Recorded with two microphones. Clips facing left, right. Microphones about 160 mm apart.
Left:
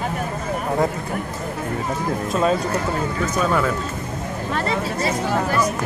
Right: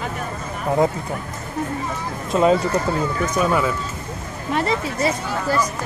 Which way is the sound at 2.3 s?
20° right (ahead or behind).